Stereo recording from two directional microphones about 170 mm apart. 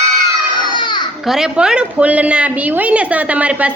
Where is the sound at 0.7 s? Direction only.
25° left (ahead or behind).